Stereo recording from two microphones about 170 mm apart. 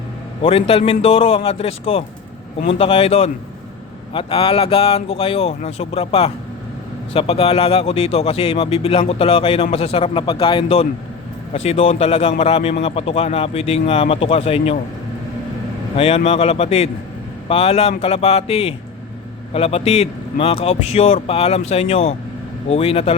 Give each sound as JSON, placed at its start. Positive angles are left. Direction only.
{"t": 0.4, "sound": "speech", "side_deg": 35}
{"t": 16.0, "sound": "speech", "side_deg": 40}